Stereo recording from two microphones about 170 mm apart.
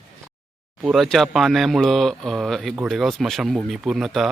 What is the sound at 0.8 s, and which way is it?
Speech, centre (ahead or behind).